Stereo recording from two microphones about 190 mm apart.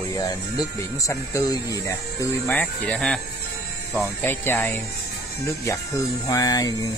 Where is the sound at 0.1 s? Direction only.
20° left (ahead or behind).